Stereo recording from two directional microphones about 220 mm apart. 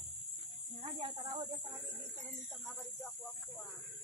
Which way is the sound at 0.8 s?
25° right (ahead or behind).